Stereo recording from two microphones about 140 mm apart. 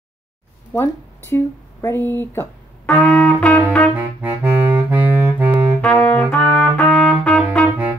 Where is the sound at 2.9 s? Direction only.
5° left (ahead or behind).